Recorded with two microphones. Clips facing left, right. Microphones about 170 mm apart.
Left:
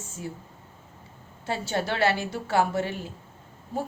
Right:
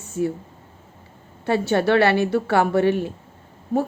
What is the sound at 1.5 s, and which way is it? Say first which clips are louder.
A woman's voice: right 10 dB; 60° right (ahead or behind).